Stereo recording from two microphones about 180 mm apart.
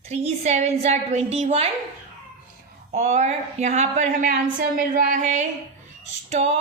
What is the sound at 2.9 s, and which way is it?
A woman's voice, 40° right (ahead or behind).